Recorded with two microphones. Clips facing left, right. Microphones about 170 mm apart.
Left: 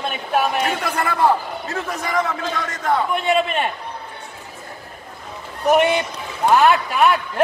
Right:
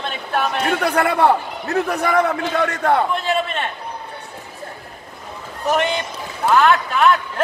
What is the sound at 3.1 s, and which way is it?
Speech, 10° left (ahead or behind).